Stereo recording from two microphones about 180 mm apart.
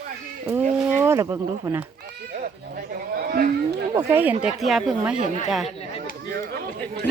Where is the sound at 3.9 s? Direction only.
15° right (ahead or behind).